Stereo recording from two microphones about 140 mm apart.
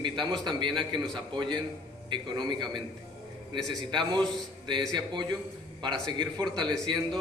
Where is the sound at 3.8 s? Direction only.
30° right (ahead or behind).